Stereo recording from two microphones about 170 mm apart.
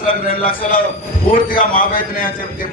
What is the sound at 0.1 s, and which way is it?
A man's voice, 55° left (ahead or behind).